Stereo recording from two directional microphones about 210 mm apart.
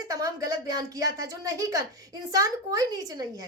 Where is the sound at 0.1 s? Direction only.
15° right (ahead or behind).